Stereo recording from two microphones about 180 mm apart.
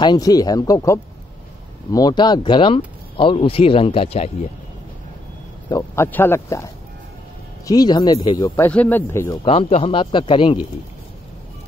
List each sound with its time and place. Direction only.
0.0 s speech: 25° left (ahead or behind)
5.7 s speech: 15° left (ahead or behind)
8.5 s speech: 10° left (ahead or behind)
9.4 s speech: 35° left (ahead or behind)